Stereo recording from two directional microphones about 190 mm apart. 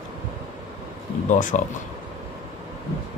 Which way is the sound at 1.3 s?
45° left (ahead or behind).